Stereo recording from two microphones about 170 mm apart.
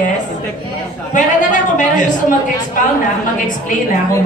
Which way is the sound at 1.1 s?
45° left (ahead or behind).